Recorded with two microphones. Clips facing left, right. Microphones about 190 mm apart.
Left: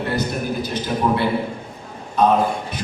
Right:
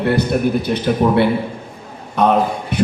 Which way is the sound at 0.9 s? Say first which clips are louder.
Right 8 dB; 55° right (ahead or behind).